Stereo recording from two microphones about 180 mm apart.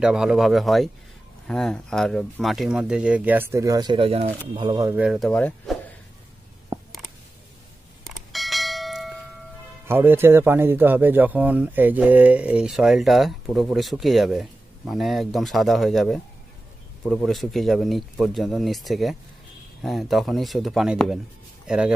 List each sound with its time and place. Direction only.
0.0 s a man's voice: 5° right (ahead or behind); by 4.9 s 25° right (ahead or behind)
4.9 s speech: 5° right (ahead or behind)
5.3 s a man's voice: 5° left (ahead or behind)
8.0 s bell: centre (ahead or behind)
9.8 s a man's voice: 10° right (ahead or behind)